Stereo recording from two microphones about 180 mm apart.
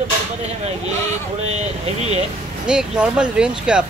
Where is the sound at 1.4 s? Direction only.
35° right (ahead or behind).